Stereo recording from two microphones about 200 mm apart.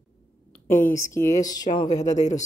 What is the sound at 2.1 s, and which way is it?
Speech, 35° left (ahead or behind).